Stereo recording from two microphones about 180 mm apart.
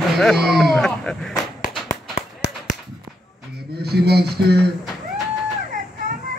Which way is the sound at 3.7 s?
60° right (ahead or behind).